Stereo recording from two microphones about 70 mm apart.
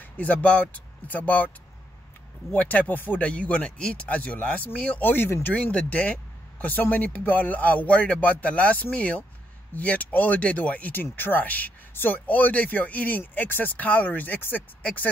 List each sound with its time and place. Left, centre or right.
0.0 s speech: left
2.5 s speech: left